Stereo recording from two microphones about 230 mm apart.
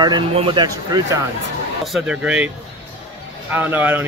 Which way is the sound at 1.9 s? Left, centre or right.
Centre.